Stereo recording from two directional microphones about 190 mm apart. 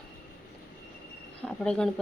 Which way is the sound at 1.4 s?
5° left (ahead or behind).